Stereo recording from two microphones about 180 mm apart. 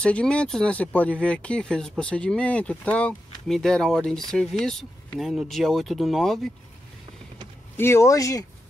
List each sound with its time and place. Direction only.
0.0 s speech: 5° left (ahead or behind)
7.7 s speech: 15° left (ahead or behind)